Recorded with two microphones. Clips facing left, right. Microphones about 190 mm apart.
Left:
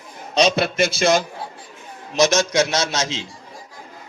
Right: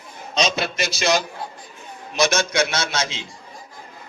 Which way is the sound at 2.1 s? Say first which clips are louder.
Left 3 dB; 40° left (ahead or behind).